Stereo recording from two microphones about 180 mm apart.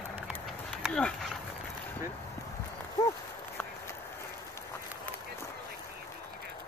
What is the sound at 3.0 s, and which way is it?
Horse, 20° left (ahead or behind).